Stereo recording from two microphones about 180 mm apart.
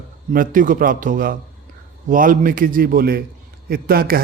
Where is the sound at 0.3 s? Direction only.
45° right (ahead or behind).